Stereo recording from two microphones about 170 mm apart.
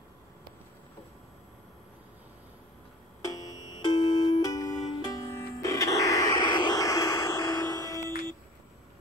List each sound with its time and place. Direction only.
3.8 s music: 25° left (ahead or behind)